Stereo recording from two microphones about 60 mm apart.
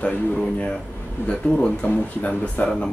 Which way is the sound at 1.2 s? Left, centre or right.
Centre.